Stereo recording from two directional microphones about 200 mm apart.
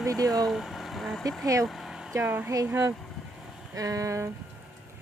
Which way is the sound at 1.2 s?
15° right (ahead or behind).